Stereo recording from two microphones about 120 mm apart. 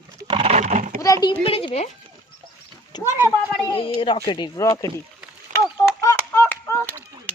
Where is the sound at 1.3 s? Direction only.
50° left (ahead or behind).